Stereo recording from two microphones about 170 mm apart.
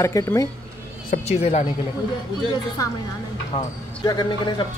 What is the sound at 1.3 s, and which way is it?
Speech, 40° left (ahead or behind).